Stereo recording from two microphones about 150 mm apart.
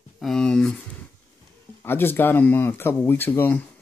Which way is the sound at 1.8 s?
15° left (ahead or behind).